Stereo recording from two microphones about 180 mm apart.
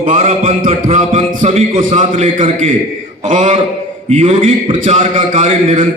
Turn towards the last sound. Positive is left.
turn(degrees=-40)  # may be behind; listen again after turning